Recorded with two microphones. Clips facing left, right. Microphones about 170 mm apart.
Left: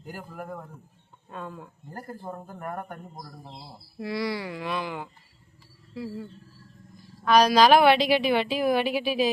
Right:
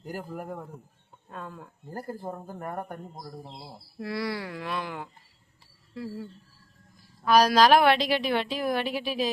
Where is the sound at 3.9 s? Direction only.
Centre (ahead or behind).